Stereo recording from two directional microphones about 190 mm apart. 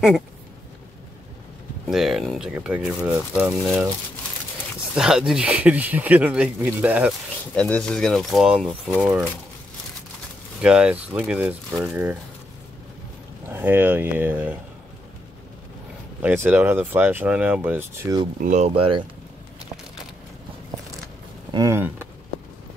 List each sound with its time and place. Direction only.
1.9 s speech: centre (ahead or behind)
4.9 s speech: 5° right (ahead or behind)
7.5 s speech: 5° left (ahead or behind); by 9.3 s 10° right (ahead or behind)
10.6 s speech: 5° right (ahead or behind)
13.5 s speech: 10° right (ahead or behind)
16.2 s speech: 10° right (ahead or behind)
18.4 s speech: 40° right (ahead or behind)
21.5 s speech: 15° right (ahead or behind)